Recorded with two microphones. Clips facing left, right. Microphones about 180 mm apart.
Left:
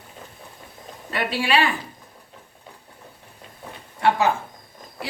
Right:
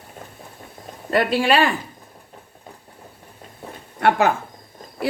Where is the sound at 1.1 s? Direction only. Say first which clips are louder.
Right 5 dB; 45° right (ahead or behind).